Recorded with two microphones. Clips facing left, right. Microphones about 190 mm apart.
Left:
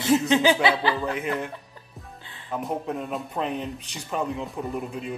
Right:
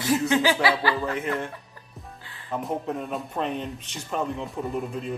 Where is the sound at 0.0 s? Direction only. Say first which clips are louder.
Left 2 dB; 20° left (ahead or behind).